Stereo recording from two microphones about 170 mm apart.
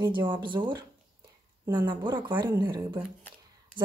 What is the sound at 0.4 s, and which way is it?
Speech, 30° right (ahead or behind).